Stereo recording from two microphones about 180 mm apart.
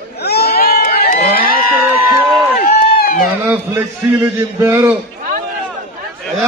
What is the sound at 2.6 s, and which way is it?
Run, 50° left (ahead or behind).